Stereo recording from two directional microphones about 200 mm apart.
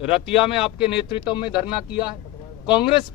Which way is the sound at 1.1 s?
25° left (ahead or behind).